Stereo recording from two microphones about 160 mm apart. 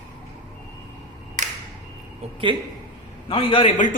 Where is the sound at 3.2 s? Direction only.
35° left (ahead or behind).